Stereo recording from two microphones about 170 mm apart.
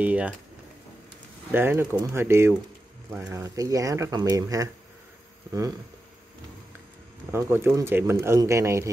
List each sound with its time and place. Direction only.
0.0 s speech: 10° right (ahead or behind)
1.5 s speech: 10° right (ahead or behind)
7.2 s speech: 15° right (ahead or behind)